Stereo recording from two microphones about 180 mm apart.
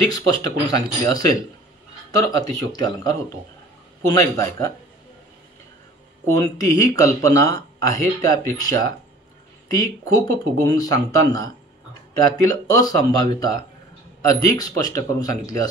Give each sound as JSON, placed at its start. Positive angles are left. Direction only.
{"t": 0.1, "sound": "a man's voice", "side_deg": 20}
{"t": 6.2, "sound": "speech", "side_deg": 20}
{"t": 12.4, "sound": "speech", "side_deg": 20}